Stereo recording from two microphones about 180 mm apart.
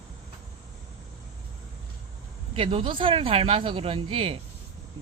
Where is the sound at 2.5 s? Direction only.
30° right (ahead or behind).